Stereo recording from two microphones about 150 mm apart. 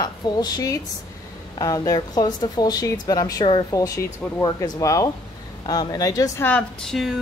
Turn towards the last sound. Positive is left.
turn(degrees=0)  # may be behind; listen again after turning